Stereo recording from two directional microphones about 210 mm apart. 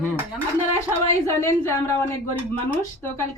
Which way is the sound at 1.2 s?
15° left (ahead or behind).